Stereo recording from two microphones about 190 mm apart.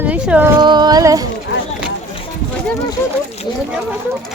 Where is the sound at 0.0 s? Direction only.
10° right (ahead or behind).